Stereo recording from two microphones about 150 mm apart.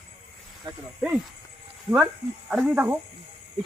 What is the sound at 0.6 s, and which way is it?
Speech, 30° right (ahead or behind).